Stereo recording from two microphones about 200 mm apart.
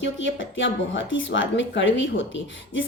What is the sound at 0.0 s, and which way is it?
A woman's voice, 65° left (ahead or behind).